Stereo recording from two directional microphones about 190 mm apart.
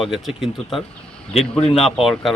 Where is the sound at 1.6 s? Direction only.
30° left (ahead or behind).